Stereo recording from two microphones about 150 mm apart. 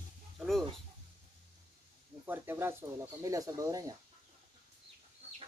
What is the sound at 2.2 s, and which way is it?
Speech, 15° right (ahead or behind).